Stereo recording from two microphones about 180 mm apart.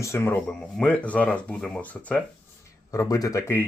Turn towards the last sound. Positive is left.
turn(degrees=15)  # may be behind; listen again after turning